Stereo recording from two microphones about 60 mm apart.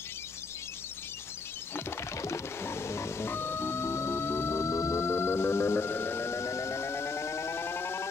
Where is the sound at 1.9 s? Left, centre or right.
Left.